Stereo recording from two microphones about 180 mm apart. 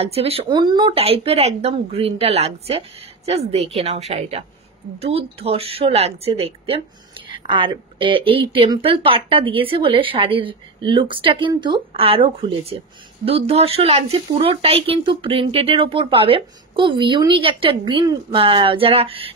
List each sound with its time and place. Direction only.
0.0 s speech: 35° right (ahead or behind)